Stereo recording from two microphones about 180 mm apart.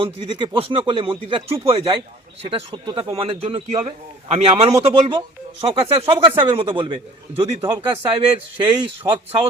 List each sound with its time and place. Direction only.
0.3 s speech: 25° right (ahead or behind)